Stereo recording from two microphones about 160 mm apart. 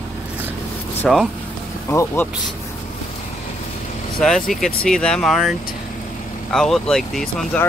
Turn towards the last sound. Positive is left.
turn(degrees=10)  # may be behind; listen again after turning